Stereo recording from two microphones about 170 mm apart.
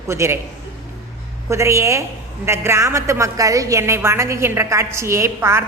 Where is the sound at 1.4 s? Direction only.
15° right (ahead or behind).